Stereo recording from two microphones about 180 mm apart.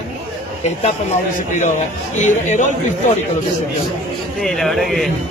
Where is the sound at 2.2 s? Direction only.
40° left (ahead or behind).